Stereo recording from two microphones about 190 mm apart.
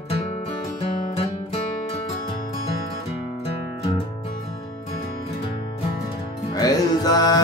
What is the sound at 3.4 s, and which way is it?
Music, 30° left (ahead or behind).